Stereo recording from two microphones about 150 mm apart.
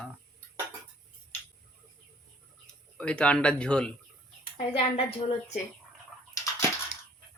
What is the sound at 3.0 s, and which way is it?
Speech, 5° left (ahead or behind).